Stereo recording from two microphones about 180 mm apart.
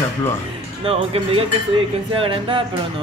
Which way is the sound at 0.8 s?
30° right (ahead or behind).